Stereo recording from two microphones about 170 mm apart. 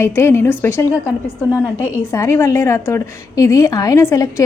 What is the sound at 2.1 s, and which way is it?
A woman's voice, 15° left (ahead or behind).